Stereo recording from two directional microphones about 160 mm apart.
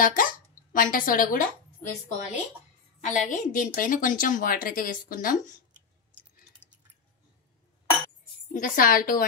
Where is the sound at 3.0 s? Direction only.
50° left (ahead or behind).